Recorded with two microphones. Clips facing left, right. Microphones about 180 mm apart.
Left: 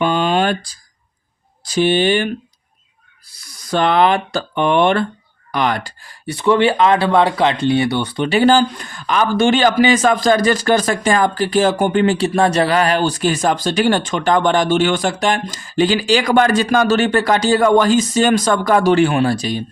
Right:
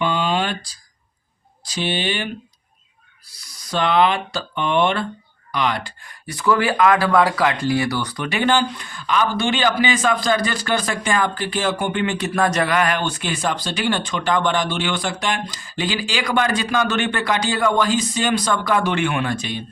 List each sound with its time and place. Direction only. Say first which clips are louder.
0.0 s a sound: left 5 dB; 50° left (ahead or behind)
1.6 s speech: left 9 dB; 50° left (ahead or behind)
3.7 s speech: left 4 dB; 50° left (ahead or behind)
6.0 s speech: left 5 dB; 30° left (ahead or behind)